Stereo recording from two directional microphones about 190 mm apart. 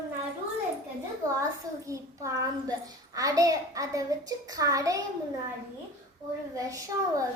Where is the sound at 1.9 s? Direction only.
15° right (ahead or behind).